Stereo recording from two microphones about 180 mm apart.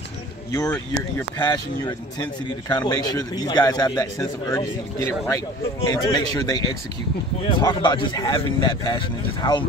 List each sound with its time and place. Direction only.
1.4 s a man's voice: 25° left (ahead or behind)